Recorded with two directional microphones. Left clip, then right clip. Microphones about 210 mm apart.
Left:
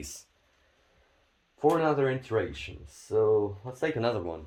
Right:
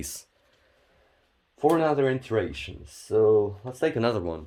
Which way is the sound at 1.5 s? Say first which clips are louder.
Right 3 dB; 50° right (ahead or behind).